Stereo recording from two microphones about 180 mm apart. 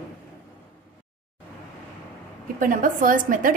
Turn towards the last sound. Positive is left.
turn(degrees=-50)  # may be behind; listen again after turning